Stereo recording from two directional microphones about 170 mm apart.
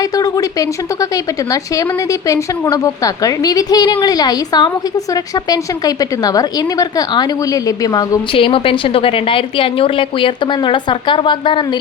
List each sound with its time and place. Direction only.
2.2 s a woman's voice: 20° left (ahead or behind)